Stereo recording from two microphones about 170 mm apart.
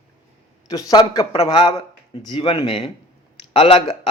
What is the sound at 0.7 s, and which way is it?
A man's voice, 20° left (ahead or behind).